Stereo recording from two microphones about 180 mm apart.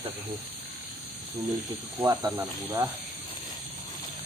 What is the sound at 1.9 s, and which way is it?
Speech, 20° right (ahead or behind).